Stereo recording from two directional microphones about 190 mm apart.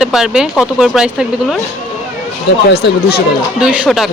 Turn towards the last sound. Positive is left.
turn(degrees=-5)  # may be behind; listen again after turning